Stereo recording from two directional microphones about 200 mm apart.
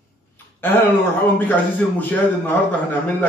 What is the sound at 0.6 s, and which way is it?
Dishes, 10° left (ahead or behind).